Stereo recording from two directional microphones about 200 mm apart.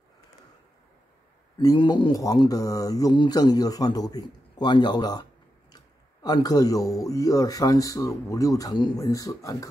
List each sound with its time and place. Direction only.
1.6 s a man's voice: 20° left (ahead or behind)